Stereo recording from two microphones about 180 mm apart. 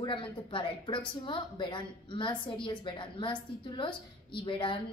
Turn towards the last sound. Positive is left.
turn(degrees=25)  # may be behind; listen again after turning